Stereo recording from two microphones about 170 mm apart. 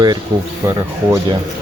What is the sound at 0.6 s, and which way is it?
Speech, 15° right (ahead or behind).